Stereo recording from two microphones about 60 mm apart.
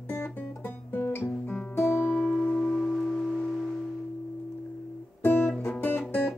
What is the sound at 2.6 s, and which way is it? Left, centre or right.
Singing bowl, centre.